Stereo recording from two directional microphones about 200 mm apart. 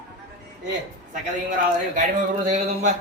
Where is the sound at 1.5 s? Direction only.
40° right (ahead or behind).